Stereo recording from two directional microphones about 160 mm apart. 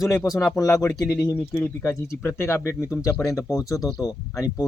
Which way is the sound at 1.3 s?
10° left (ahead or behind).